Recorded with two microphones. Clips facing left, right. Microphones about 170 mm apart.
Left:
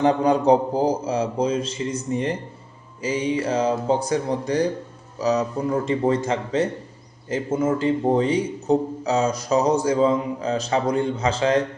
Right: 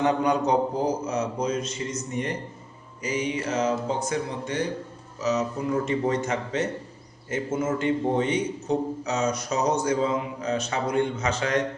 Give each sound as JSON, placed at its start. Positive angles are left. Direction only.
{"t": 0.0, "sound": "a man's voice", "side_deg": 30}